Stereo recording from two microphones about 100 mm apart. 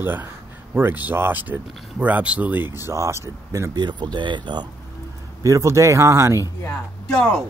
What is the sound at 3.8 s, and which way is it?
Speech, 45° right (ahead or behind).